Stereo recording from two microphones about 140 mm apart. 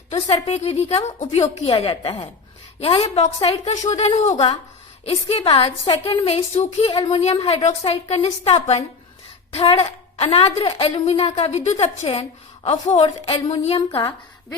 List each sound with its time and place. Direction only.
0.1 s a woman's voice: 45° left (ahead or behind)
2.8 s a woman's voice: 45° left (ahead or behind)
6.3 s a woman's voice: 50° left (ahead or behind)
6.9 s a woman's voice: 35° left (ahead or behind)
7.2 s a woman's voice: 45° left (ahead or behind)
13.7 s a woman's voice: 35° left (ahead or behind)